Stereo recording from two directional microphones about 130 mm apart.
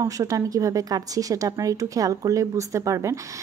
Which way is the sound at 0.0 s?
25° right (ahead or behind).